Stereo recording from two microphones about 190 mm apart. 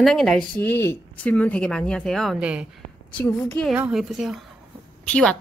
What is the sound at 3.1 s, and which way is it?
Speech, 5° left (ahead or behind).